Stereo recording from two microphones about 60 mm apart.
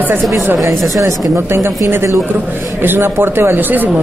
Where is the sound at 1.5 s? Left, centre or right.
Right.